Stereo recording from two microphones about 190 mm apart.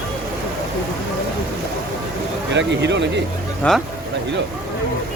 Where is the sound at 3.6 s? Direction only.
5° left (ahead or behind).